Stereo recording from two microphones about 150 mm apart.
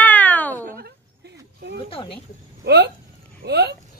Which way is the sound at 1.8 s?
35° left (ahead or behind).